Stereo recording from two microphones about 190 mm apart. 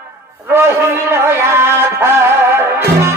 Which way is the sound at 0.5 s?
15° right (ahead or behind).